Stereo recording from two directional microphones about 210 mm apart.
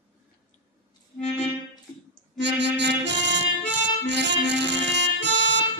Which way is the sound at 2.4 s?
55° right (ahead or behind).